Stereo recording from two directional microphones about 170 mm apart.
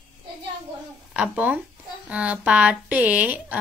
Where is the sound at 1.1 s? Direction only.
5° right (ahead or behind).